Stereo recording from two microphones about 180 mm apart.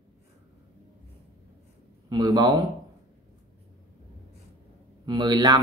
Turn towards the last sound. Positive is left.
turn(degrees=-20)  # may be behind; listen again after turning